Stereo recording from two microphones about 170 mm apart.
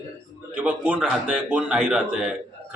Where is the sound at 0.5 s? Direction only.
10° right (ahead or behind).